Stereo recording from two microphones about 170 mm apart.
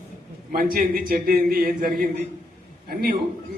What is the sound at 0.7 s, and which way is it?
A man's voice, 60° right (ahead or behind).